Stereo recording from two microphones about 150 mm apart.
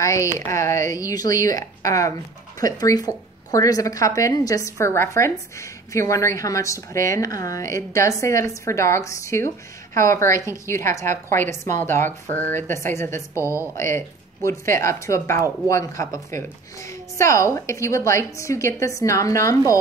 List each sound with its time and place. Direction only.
0.0 s a woman's voice: 20° left (ahead or behind)